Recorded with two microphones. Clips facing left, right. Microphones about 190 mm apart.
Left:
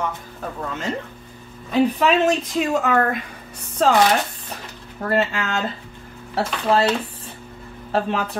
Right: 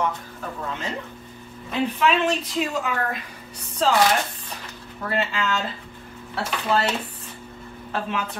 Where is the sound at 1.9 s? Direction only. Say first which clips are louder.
Left 4 dB; 40° left (ahead or behind).